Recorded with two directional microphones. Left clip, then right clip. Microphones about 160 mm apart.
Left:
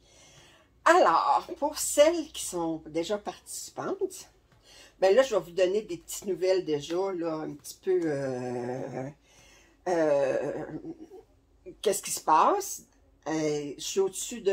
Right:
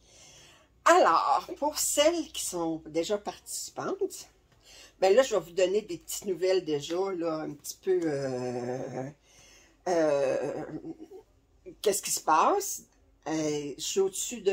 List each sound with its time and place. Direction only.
0.8 s speech: 10° right (ahead or behind)
11.8 s speech: 5° right (ahead or behind)